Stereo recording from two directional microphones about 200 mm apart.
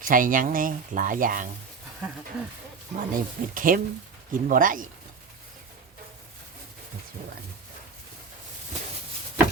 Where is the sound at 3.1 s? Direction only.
45° right (ahead or behind).